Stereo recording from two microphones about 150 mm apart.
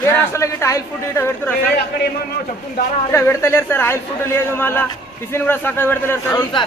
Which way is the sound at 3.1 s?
15° left (ahead or behind).